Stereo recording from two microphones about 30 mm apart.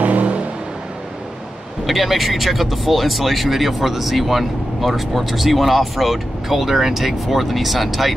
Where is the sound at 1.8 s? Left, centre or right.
Centre.